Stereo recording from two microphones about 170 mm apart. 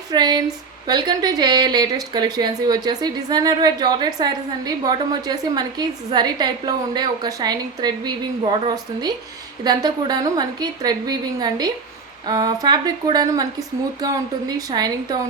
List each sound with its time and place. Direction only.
0.1 s speech: 25° right (ahead or behind)